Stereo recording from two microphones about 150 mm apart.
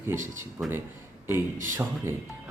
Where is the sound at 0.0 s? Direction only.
15° right (ahead or behind).